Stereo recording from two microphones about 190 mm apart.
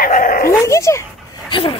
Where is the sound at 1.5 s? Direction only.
25° left (ahead or behind).